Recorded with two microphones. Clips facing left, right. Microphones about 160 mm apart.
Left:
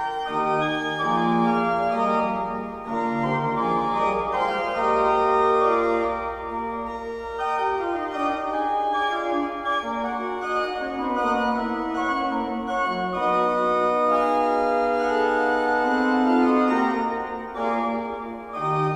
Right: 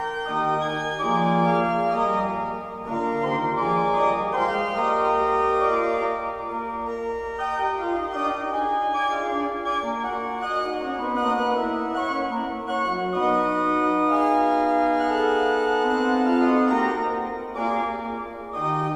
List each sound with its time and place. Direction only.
1.1 s organ: 5° right (ahead or behind)
4.4 s organ: centre (ahead or behind)
13.1 s organ: centre (ahead or behind)